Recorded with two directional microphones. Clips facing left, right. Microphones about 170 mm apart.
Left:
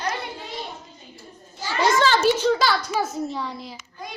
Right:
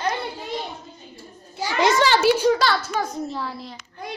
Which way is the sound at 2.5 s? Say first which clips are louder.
Even; centre (ahead or behind).